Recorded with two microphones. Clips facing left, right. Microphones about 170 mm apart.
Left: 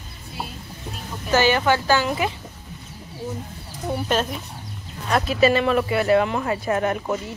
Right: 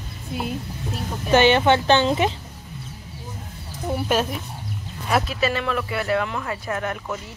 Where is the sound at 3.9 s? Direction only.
5° right (ahead or behind).